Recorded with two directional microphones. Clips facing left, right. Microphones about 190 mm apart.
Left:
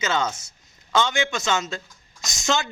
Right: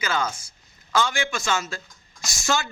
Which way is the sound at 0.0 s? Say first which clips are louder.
Left 2 dB; 25° left (ahead or behind).